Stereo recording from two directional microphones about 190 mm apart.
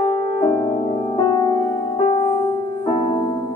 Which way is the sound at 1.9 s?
25° left (ahead or behind).